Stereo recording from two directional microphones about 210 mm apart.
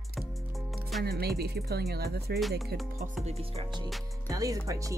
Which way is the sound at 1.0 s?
50° right (ahead or behind).